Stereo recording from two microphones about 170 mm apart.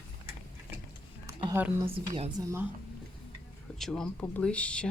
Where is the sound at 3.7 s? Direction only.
5° left (ahead or behind).